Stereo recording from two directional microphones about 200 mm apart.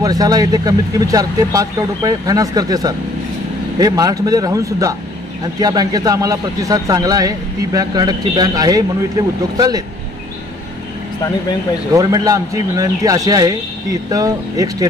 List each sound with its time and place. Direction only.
0.0 s a man's voice: 20° right (ahead or behind)
11.9 s speech: 20° right (ahead or behind)